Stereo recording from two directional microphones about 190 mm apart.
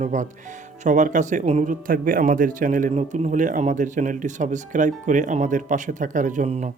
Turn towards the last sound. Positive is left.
turn(degrees=-35)  # may be behind; listen again after turning